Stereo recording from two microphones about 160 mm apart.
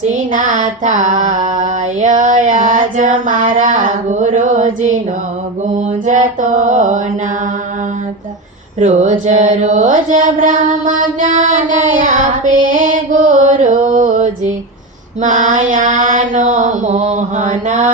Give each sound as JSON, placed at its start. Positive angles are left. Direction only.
{"t": 0.0, "sound": "mantra", "side_deg": -55}
{"t": 8.8, "sound": "mantra", "side_deg": -50}